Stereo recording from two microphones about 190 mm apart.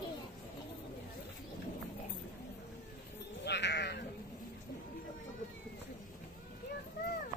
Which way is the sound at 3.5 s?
65° left (ahead or behind).